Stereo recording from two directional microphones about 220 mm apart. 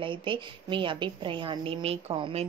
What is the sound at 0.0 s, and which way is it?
A woman's voice, 20° right (ahead or behind).